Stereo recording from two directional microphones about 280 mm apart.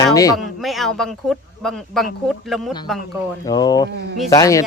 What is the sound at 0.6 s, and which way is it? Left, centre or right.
Speech, centre.